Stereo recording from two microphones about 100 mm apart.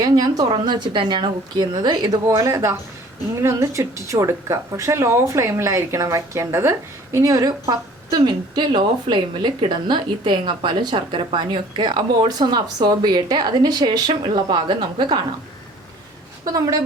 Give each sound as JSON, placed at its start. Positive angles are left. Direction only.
{"t": 0.0, "sound": "speech", "side_deg": -40}
{"t": 2.2, "sound": "speech", "side_deg": -35}
{"t": 16.5, "sound": "speech", "side_deg": -35}